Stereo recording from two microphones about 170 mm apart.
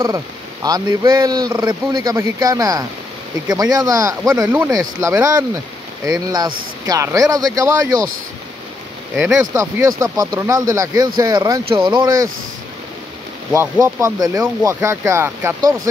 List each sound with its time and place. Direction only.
0.7 s speech: 25° right (ahead or behind)
9.1 s speech: 5° right (ahead or behind)
9.4 s speech: 20° right (ahead or behind)
13.5 s speech: 15° right (ahead or behind)